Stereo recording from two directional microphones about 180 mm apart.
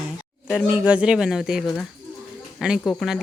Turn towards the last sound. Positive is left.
turn(degrees=0)  # may be behind; listen again after turning